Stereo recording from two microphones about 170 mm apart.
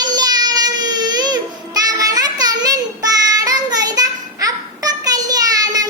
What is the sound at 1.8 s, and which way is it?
Child singing, 20° right (ahead or behind).